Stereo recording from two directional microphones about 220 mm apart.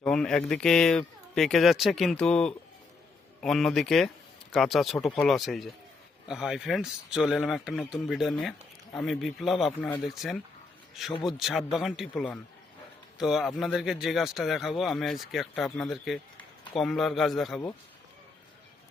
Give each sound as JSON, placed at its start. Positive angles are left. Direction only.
{"t": 0.0, "sound": "speech", "side_deg": 5}